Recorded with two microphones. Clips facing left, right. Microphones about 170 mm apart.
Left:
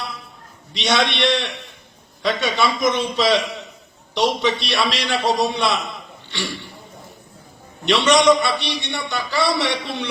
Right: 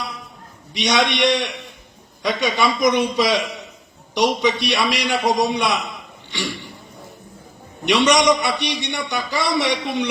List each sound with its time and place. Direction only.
0.7 s a man's voice: 15° right (ahead or behind)
7.9 s a man's voice: 15° right (ahead or behind)